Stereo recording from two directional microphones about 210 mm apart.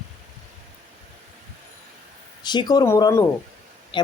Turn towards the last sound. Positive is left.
turn(degrees=20)  # may be behind; listen again after turning